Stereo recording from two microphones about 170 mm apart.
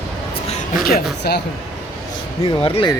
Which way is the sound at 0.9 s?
70° left (ahead or behind).